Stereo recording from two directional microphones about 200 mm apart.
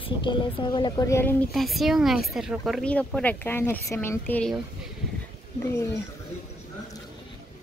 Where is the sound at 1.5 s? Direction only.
Centre (ahead or behind).